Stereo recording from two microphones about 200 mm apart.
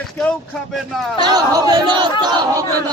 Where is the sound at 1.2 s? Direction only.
20° right (ahead or behind).